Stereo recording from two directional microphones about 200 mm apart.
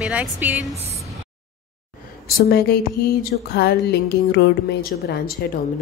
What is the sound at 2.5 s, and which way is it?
Speech, 50° left (ahead or behind).